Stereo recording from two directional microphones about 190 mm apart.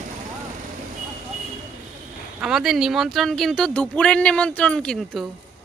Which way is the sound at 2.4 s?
5° right (ahead or behind).